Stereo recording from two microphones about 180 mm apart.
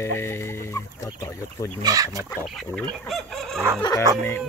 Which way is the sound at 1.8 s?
20° right (ahead or behind).